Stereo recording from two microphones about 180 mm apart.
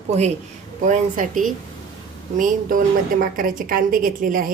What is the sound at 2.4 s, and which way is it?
A woman's voice, 50° right (ahead or behind).